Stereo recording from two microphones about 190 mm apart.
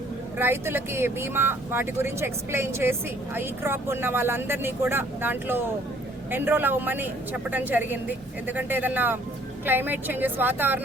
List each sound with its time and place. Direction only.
0.3 s speech: 10° right (ahead or behind)